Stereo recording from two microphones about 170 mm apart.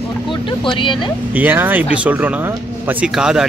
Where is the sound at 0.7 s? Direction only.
30° left (ahead or behind).